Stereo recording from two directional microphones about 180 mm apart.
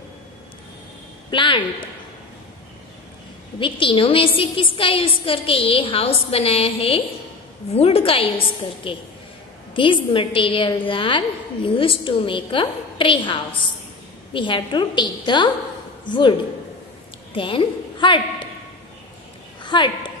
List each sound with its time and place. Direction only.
1.3 s a woman's voice: 25° left (ahead or behind)
3.5 s a woman's voice: 30° left (ahead or behind)
19.6 s a woman's voice: 25° left (ahead or behind)